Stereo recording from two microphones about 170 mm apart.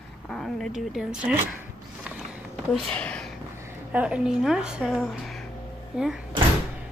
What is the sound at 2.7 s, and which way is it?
Speech, 5° left (ahead or behind).